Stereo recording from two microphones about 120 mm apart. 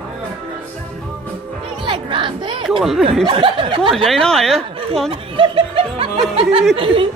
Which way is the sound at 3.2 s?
45° right (ahead or behind).